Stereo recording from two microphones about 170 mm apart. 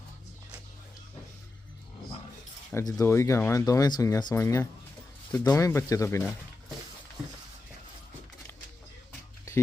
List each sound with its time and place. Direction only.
2.7 s speech: 15° left (ahead or behind)